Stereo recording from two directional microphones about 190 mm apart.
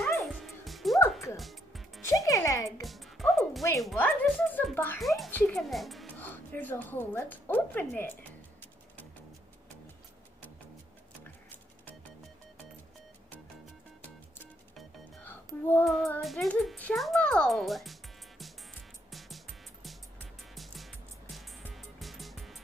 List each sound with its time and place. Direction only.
0.2 s music: centre (ahead or behind)
2.0 s music: 15° left (ahead or behind)
2.8 s music: centre (ahead or behind)
3.8 s a woman's voice: 10° left (ahead or behind)
5.0 s a sound: centre (ahead or behind)
5.6 s music: centre (ahead or behind)
14.8 s music: 5° left (ahead or behind)